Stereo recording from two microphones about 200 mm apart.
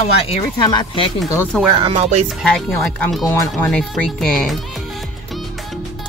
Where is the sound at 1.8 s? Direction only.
30° right (ahead or behind).